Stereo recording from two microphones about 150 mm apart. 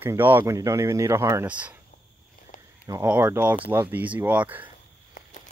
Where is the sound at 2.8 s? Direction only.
25° right (ahead or behind).